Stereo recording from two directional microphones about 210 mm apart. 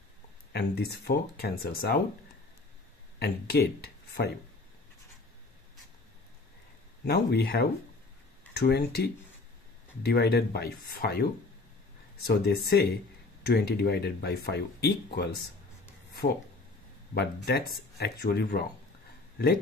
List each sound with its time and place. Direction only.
0.5 s speech: 50° left (ahead or behind)
3.2 s speech: 50° left (ahead or behind)
7.1 s speech: 50° left (ahead or behind)
12.3 s speech: 50° left (ahead or behind)